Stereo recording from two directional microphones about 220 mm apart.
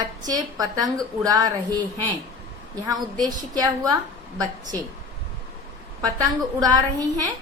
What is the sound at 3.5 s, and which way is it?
Speech, 15° right (ahead or behind).